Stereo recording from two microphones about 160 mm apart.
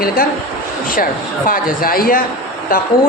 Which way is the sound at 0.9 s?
60° left (ahead or behind).